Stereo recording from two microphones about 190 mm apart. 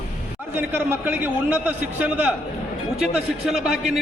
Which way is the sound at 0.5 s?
10° right (ahead or behind).